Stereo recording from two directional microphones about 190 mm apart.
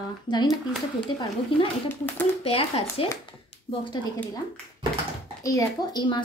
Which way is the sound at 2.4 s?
30° left (ahead or behind).